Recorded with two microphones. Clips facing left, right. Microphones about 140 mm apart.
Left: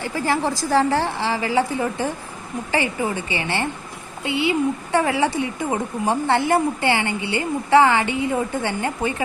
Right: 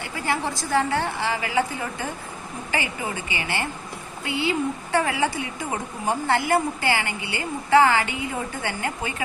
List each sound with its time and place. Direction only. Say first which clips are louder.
0.7 s a woman's voice: left 4 dB; 35° left (ahead or behind)